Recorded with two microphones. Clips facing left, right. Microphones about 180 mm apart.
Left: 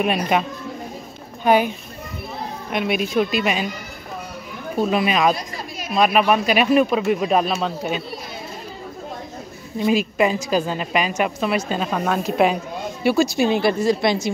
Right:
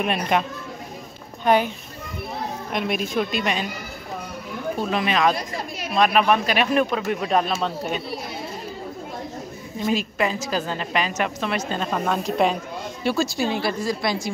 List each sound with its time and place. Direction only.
0.0 s a woman's voice: 5° left (ahead or behind)
2.7 s a woman's voice: 5° left (ahead or behind)
4.9 s a woman's voice: 10° left (ahead or behind)
9.8 s a woman's voice: 10° left (ahead or behind)